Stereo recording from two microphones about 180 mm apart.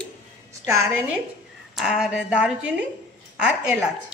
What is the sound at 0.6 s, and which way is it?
Dishes, 15° right (ahead or behind).